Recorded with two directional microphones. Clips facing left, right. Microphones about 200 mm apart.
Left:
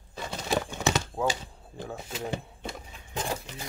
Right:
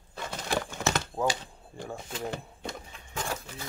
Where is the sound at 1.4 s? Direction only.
5° left (ahead or behind).